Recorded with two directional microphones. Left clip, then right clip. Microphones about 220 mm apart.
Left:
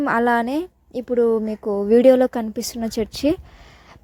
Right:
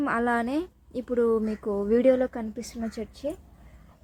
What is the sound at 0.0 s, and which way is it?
A woman's voice, 30° left (ahead or behind).